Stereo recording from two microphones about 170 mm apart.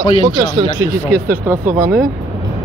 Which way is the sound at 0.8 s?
15° right (ahead or behind).